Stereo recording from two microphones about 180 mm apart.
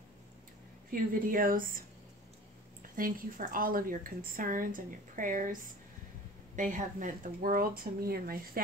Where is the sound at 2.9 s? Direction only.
50° right (ahead or behind).